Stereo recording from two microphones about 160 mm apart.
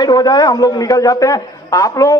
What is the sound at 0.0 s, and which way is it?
A man's voice, 25° left (ahead or behind).